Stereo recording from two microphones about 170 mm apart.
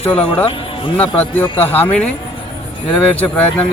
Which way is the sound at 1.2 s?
10° left (ahead or behind).